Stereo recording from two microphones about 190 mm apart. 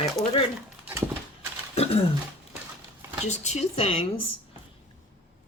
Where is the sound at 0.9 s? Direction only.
10° right (ahead or behind).